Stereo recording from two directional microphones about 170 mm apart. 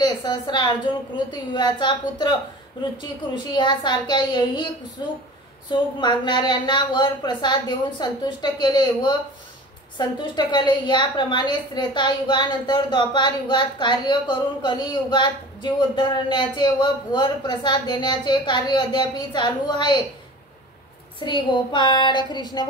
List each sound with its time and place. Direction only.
0.0 s a woman's voice: 25° left (ahead or behind)
3.5 s a woman's voice: 25° left (ahead or behind)
21.2 s a woman's voice: 30° left (ahead or behind)